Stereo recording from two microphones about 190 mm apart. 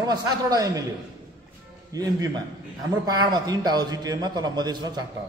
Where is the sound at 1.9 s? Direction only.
20° right (ahead or behind).